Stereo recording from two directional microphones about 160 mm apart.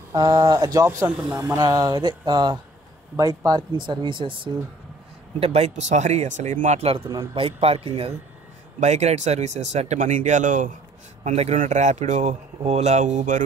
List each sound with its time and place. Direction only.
0.1 s speech: 20° right (ahead or behind)
5.4 s speech: 40° right (ahead or behind)